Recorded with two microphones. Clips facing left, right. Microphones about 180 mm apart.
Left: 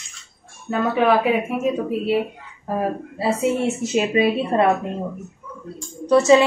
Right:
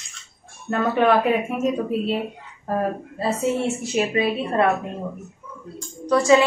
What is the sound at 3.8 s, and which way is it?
Speech, 20° left (ahead or behind).